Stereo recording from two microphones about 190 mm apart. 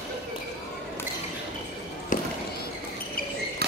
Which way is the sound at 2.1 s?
45° left (ahead or behind).